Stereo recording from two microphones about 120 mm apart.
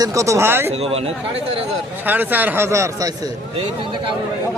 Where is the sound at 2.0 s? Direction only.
15° right (ahead or behind).